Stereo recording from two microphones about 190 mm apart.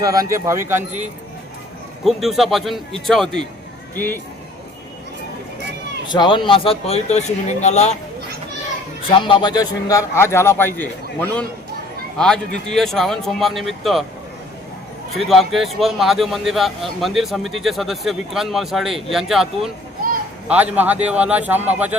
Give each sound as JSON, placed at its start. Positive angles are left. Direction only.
{"t": 0.0, "sound": "a man's voice", "side_deg": -20}
{"t": 6.1, "sound": "speech", "side_deg": 25}
{"t": 9.0, "sound": "a man's voice", "side_deg": 25}
{"t": 15.1, "sound": "a man's voice", "side_deg": 0}